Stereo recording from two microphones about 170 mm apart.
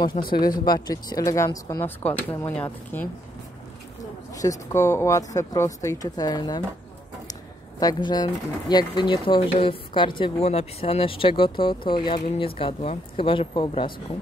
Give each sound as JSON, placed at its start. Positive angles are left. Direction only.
{"t": 0.2, "sound": "speech", "side_deg": 45}
{"t": 0.7, "sound": "speech", "side_deg": 25}
{"t": 4.4, "sound": "speech", "side_deg": 20}
{"t": 7.8, "sound": "speech", "side_deg": 25}